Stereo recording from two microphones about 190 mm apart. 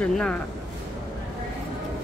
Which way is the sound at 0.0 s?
5° left (ahead or behind).